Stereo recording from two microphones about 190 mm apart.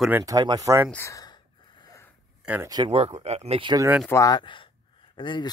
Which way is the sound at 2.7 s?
25° right (ahead or behind).